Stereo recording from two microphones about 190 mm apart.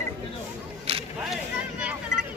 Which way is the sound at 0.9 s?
30° right (ahead or behind).